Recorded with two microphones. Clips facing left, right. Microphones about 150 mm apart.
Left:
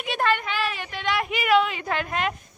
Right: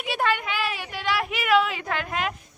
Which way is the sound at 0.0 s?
5° right (ahead or behind).